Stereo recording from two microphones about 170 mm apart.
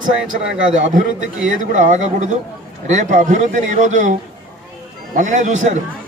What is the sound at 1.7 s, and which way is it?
A man's voice, 45° right (ahead or behind).